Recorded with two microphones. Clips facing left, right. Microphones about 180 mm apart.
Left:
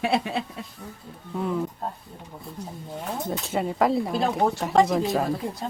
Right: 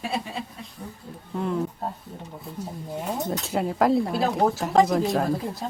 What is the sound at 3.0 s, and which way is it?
Speech, 5° right (ahead or behind).